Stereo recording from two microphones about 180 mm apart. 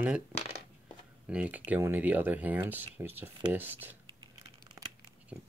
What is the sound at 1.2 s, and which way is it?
Speech, 5° right (ahead or behind).